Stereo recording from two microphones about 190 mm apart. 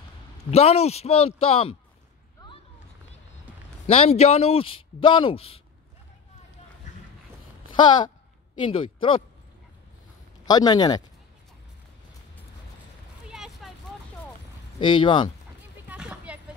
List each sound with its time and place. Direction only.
0.5 s a man's voice: 35° left (ahead or behind)
3.8 s a man's voice: 30° left (ahead or behind)
8.6 s speech: 25° left (ahead or behind)
10.4 s speech: 20° left (ahead or behind)
13.3 s a sound: centre (ahead or behind)
14.8 s speech: 25° left (ahead or behind)
15.9 s a sound: 5° right (ahead or behind)